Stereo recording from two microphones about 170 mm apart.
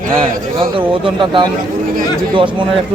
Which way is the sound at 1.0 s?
30° right (ahead or behind).